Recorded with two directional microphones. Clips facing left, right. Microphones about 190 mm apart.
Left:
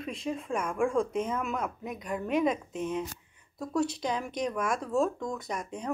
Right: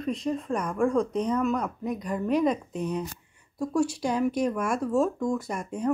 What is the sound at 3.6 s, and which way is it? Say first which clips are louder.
Speech: right 4 dB; 10° right (ahead or behind).